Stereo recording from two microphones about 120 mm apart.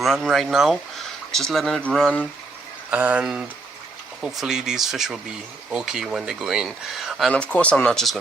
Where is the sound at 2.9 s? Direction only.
10° right (ahead or behind).